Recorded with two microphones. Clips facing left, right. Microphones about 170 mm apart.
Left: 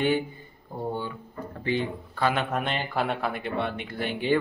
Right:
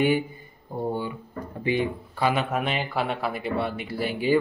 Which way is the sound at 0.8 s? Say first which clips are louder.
Right 3 dB; 10° right (ahead or behind).